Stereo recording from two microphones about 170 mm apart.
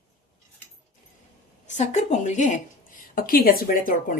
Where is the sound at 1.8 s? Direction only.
40° left (ahead or behind).